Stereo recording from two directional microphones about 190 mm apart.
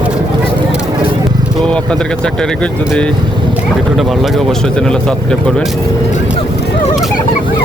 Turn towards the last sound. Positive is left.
turn(degrees=5)  # may be behind; listen again after turning